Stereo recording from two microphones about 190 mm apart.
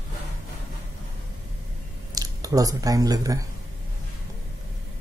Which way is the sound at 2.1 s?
20° right (ahead or behind).